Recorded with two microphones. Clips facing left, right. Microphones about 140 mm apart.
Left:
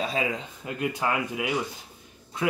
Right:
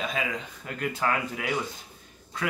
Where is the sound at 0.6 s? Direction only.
15° left (ahead or behind).